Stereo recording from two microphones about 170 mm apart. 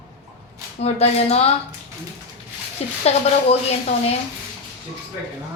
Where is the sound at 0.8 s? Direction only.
35° left (ahead or behind).